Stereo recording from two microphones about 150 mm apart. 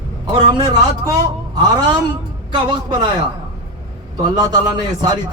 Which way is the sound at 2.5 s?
30° right (ahead or behind).